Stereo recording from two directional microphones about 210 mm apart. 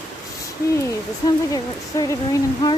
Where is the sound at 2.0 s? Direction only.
20° left (ahead or behind).